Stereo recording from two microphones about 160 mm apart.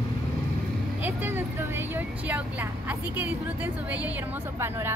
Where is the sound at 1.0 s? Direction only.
15° right (ahead or behind).